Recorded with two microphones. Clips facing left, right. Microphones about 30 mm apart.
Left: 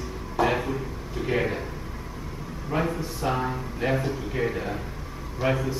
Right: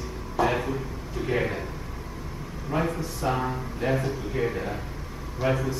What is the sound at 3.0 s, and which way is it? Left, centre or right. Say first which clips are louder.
Speech: even; centre.